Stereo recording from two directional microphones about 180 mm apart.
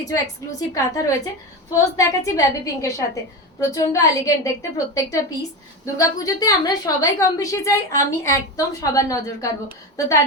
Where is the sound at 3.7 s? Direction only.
20° left (ahead or behind).